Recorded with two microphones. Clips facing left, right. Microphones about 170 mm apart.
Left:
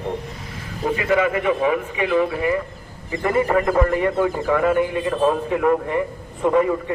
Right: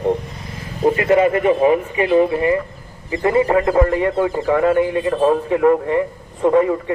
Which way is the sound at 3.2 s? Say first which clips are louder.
Right 3 dB; 15° right (ahead or behind).